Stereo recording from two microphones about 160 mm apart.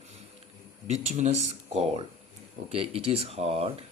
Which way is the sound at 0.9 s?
45° right (ahead or behind).